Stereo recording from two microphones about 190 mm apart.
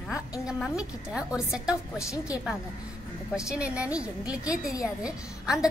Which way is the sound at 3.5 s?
5° right (ahead or behind).